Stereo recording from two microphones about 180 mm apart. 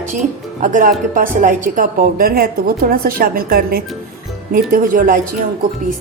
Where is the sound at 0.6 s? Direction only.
45° right (ahead or behind).